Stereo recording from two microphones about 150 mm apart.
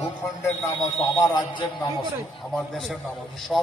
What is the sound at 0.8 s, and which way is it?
A man's voice, 25° left (ahead or behind).